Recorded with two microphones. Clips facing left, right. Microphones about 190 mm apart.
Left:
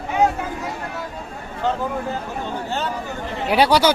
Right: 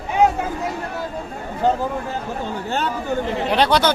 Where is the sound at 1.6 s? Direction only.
40° right (ahead or behind).